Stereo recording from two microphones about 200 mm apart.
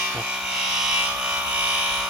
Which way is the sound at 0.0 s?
5° right (ahead or behind).